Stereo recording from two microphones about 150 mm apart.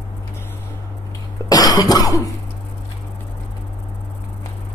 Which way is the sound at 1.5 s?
25° left (ahead or behind).